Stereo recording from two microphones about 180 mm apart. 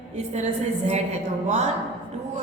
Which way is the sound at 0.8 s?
40° right (ahead or behind).